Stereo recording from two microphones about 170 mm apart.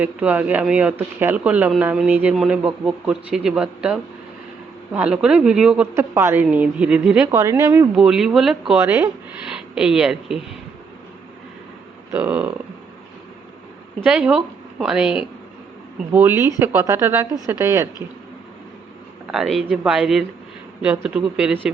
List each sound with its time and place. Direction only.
0.0 s speech: 10° right (ahead or behind)
12.1 s speech: 10° right (ahead or behind)
14.0 s a woman's voice: 5° right (ahead or behind)
19.3 s a woman's voice: centre (ahead or behind)